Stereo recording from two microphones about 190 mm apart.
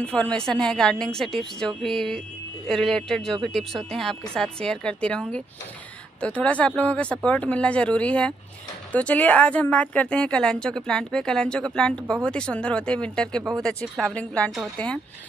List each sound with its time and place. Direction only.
0.0 s a woman's voice: 5° left (ahead or behind)